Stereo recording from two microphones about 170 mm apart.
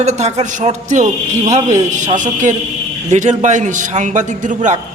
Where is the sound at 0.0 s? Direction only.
40° right (ahead or behind).